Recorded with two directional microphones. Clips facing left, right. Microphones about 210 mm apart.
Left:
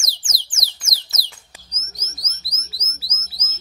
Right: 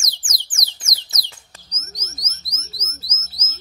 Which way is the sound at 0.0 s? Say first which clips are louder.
Left 1 dB; 25° left (ahead or behind).